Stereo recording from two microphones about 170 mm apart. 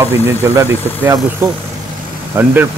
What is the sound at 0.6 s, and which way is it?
Speech, 20° right (ahead or behind).